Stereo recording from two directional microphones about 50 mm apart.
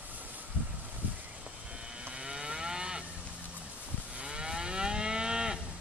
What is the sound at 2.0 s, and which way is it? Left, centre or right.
Moo, centre.